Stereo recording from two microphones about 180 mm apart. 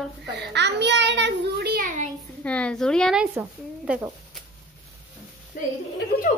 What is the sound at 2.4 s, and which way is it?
Speech, 5° left (ahead or behind).